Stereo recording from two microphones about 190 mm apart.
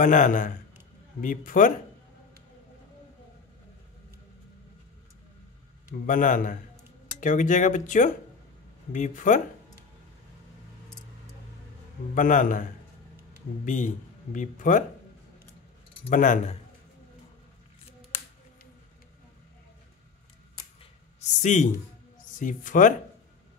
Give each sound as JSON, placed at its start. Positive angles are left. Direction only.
{"t": 0.0, "sound": "speech", "side_deg": 40}
{"t": 6.0, "sound": "speech", "side_deg": 45}
{"t": 12.2, "sound": "speech", "side_deg": 45}
{"t": 13.7, "sound": "speech", "side_deg": 40}
{"t": 16.1, "sound": "speech", "side_deg": 45}
{"t": 21.2, "sound": "speech", "side_deg": 35}